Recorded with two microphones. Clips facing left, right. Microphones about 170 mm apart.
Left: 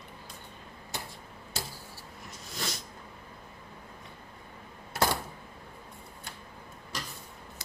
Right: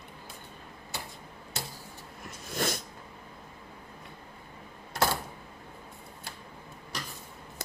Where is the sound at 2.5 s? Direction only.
55° right (ahead or behind).